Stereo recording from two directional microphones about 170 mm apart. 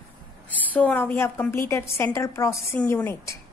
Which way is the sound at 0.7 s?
10° left (ahead or behind).